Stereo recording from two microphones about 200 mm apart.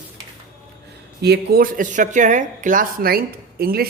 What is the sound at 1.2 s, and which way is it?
Speech, 55° right (ahead or behind).